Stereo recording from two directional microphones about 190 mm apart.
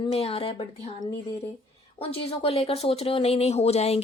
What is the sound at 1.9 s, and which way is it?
Speech, 30° left (ahead or behind).